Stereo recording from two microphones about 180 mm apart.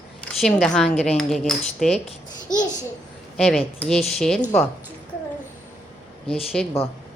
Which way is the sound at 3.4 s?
5° left (ahead or behind).